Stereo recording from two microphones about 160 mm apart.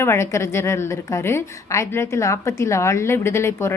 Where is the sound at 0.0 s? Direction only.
15° left (ahead or behind).